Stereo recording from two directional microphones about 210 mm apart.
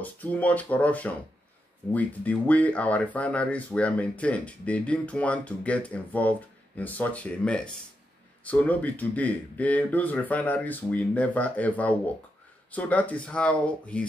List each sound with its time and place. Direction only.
0.0 s speech: 5° left (ahead or behind)